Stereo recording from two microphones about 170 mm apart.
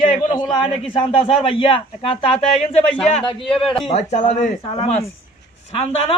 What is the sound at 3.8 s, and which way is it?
A man's voice, 40° left (ahead or behind).